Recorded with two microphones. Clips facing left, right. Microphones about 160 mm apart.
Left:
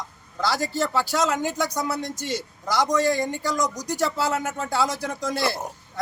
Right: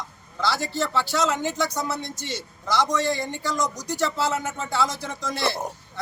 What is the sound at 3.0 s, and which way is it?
Speech, 40° left (ahead or behind).